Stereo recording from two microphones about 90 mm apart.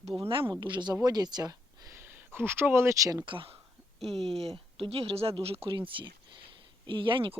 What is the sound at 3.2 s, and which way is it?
Speech, 75° right (ahead or behind).